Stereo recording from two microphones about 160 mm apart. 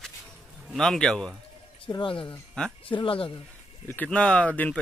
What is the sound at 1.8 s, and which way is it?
Speech, 30° left (ahead or behind).